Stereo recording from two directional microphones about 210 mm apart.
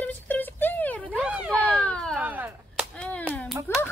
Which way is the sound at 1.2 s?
5° right (ahead or behind).